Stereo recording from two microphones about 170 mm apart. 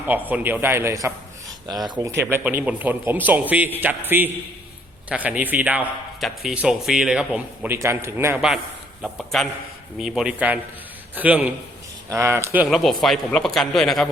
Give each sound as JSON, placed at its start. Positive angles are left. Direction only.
{"t": 0.3, "sound": "a man's voice", "side_deg": -10}
{"t": 12.6, "sound": "speech", "side_deg": 0}